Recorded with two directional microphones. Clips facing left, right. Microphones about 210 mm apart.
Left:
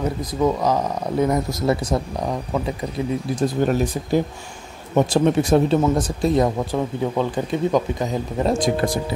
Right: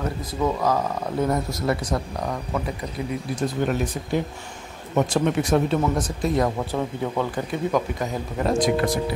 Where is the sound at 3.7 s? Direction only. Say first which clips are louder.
Left 4 dB; 35° left (ahead or behind).